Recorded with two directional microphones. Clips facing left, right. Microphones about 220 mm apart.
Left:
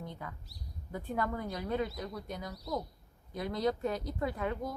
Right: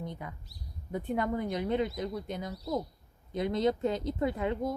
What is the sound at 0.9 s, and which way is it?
A woman's voice, 20° right (ahead or behind).